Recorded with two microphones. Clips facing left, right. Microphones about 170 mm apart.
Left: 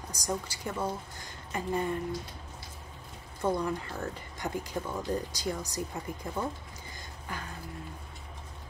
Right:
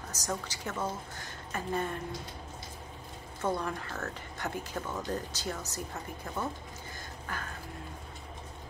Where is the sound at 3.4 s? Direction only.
15° left (ahead or behind).